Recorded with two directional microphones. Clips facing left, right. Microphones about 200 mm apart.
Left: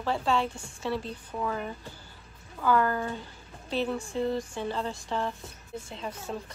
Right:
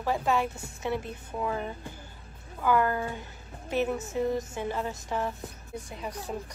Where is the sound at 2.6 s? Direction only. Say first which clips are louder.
Even; 15° right (ahead or behind).